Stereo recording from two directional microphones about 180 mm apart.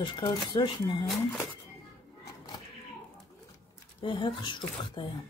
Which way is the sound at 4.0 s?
25° left (ahead or behind).